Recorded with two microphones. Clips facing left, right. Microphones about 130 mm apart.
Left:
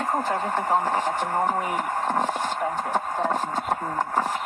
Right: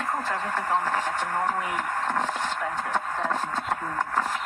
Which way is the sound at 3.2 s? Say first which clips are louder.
Left 3 dB; 20° left (ahead or behind).